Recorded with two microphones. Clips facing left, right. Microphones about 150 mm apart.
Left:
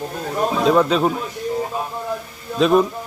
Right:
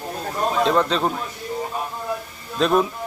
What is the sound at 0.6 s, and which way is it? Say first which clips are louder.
Speech: left 4 dB; 5° left (ahead or behind).